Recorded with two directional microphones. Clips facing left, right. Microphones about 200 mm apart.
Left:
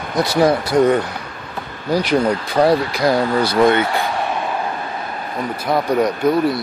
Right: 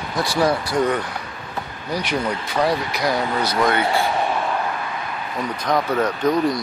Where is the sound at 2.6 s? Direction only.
30° left (ahead or behind).